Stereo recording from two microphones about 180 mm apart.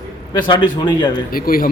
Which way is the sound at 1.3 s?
55° left (ahead or behind).